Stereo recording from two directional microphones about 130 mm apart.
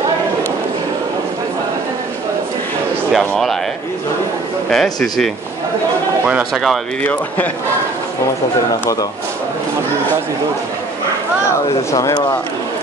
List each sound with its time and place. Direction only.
3.1 s speech: centre (ahead or behind)
4.6 s speech: 5° left (ahead or behind)
11.9 s speech: 30° left (ahead or behind)